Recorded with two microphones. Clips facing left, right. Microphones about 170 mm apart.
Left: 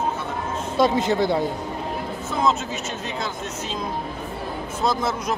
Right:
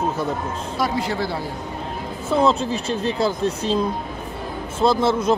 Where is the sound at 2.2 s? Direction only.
30° right (ahead or behind).